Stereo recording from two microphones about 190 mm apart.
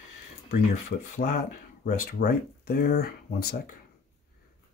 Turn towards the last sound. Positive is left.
turn(degrees=55)  # may be behind; listen again after turning